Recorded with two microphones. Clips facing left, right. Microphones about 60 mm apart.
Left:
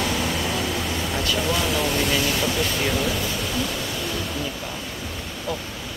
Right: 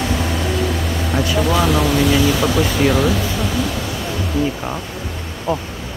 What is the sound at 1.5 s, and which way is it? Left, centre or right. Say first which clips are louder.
Speech: right 7 dB; right.